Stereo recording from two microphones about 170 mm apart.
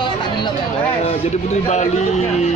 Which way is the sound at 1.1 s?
40° left (ahead or behind).